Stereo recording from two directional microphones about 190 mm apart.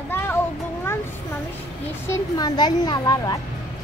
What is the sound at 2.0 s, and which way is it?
A woman's voice, 15° left (ahead or behind).